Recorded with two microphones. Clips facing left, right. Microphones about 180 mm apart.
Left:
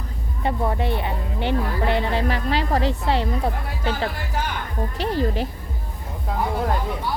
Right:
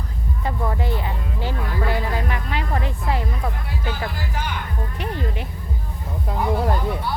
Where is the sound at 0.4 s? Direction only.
25° left (ahead or behind).